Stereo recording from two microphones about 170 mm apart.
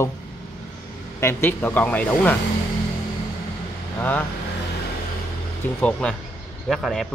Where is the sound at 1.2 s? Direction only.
15° left (ahead or behind).